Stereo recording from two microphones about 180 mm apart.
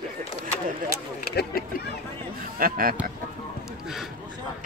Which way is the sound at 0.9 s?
60° left (ahead or behind).